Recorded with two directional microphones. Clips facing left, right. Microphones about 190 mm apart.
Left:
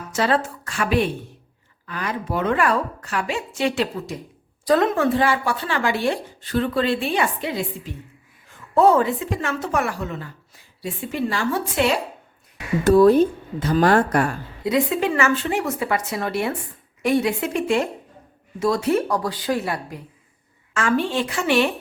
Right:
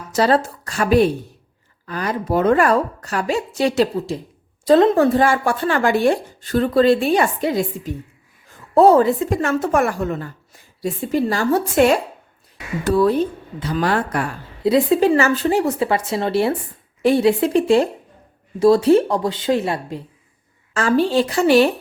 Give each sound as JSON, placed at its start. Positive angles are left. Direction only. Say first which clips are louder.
{"t": 0.1, "sound": "a woman's voice", "louder": "right 5 dB", "side_deg": -35}
{"t": 12.8, "sound": "a woman's voice", "louder": "left 3 dB", "side_deg": 45}
{"t": 14.6, "sound": "a woman's voice", "louder": "right 6 dB", "side_deg": -30}